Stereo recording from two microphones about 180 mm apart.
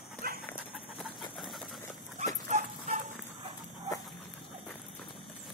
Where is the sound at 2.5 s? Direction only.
40° right (ahead or behind).